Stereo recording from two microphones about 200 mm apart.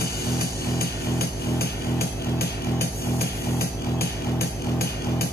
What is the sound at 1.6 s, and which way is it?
Music, 50° left (ahead or behind).